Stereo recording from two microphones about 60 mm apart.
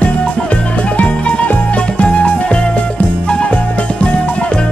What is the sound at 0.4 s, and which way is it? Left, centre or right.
Music, left.